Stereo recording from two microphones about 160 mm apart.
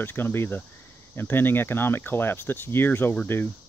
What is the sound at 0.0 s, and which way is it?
Speech, 15° left (ahead or behind).